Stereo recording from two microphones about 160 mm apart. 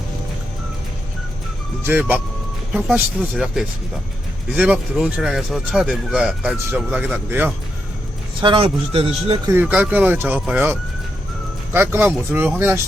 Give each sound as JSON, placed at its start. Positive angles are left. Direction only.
{"t": 1.9, "sound": "speech", "side_deg": -10}
{"t": 8.4, "sound": "speech", "side_deg": -30}
{"t": 9.5, "sound": "speech", "side_deg": -10}